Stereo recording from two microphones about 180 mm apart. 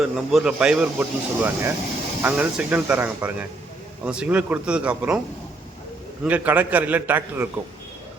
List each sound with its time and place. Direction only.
0.0 s speech: centre (ahead or behind)
6.2 s speech: 10° right (ahead or behind)